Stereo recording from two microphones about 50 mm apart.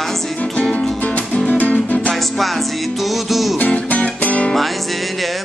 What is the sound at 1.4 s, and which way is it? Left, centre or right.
Music, left.